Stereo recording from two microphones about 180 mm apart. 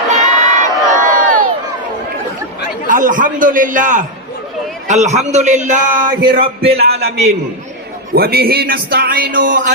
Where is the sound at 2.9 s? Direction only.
45° right (ahead or behind).